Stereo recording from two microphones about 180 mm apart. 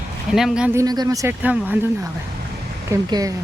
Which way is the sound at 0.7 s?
20° right (ahead or behind).